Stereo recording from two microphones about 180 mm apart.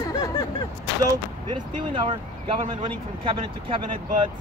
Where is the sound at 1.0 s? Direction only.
25° right (ahead or behind).